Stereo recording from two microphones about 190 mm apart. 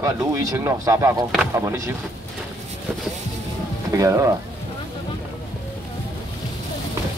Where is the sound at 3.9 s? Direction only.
15° right (ahead or behind).